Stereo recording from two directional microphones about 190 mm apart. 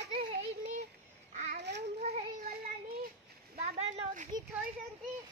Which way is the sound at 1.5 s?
60° right (ahead or behind).